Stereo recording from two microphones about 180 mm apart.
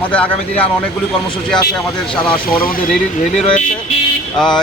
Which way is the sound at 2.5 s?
55° left (ahead or behind).